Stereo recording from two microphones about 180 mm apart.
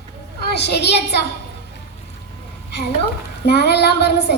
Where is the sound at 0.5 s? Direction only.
65° left (ahead or behind).